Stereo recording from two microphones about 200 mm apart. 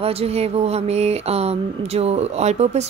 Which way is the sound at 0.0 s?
30° right (ahead or behind).